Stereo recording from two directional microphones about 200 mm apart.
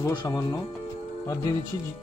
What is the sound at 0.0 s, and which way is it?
Speech, 20° left (ahead or behind).